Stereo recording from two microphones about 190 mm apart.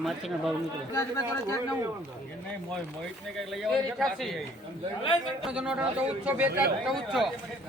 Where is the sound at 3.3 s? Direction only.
Centre (ahead or behind).